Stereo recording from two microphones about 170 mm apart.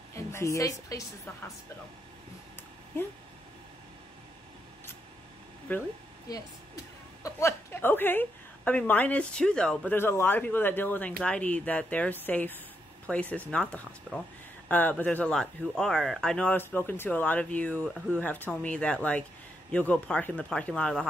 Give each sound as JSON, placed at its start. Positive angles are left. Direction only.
{"t": 0.1, "sound": "a woman's voice", "side_deg": 15}
{"t": 5.7, "sound": "a woman's voice", "side_deg": 10}
{"t": 6.3, "sound": "a woman's voice", "side_deg": 20}